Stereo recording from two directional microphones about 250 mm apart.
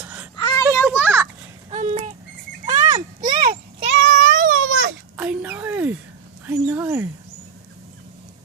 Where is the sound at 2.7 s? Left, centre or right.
Centre.